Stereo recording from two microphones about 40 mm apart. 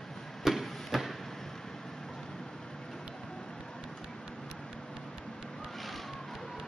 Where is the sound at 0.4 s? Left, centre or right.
Centre.